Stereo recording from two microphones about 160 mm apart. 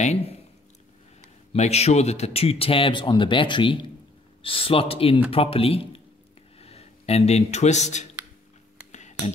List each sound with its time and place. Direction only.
0.0 s speech: 45° left (ahead or behind)
1.5 s a man's voice: 40° left (ahead or behind)
8.9 s a sound: 45° left (ahead or behind)